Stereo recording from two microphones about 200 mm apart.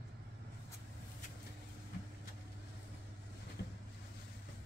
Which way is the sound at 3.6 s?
55° left (ahead or behind).